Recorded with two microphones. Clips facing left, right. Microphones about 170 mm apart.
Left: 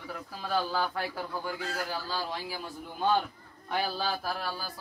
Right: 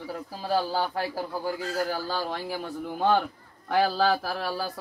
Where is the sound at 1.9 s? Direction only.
50° right (ahead or behind).